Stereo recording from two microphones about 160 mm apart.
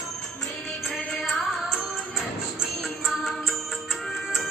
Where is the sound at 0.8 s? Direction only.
Centre (ahead or behind).